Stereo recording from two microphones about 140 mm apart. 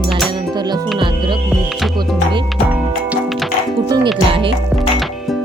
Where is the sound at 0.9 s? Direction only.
35° right (ahead or behind).